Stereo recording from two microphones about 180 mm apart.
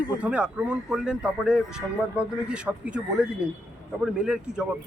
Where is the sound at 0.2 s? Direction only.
5° right (ahead or behind).